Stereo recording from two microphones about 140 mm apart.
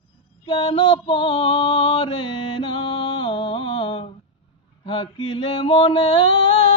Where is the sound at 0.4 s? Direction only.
40° left (ahead or behind).